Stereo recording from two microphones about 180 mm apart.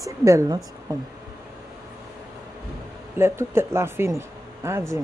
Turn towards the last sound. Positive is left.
turn(degrees=-15)  # may be behind; listen again after turning